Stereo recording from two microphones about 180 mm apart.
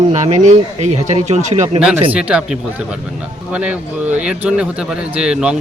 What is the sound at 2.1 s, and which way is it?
Speech, 5° right (ahead or behind).